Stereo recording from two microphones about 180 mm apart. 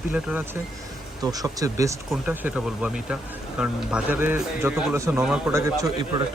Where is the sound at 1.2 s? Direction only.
20° right (ahead or behind).